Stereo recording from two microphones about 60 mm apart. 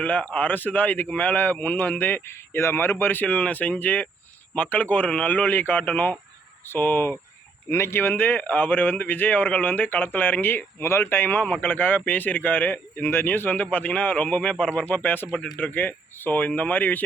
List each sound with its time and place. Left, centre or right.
0.0 s a man's voice: left
7.7 s a man's voice: left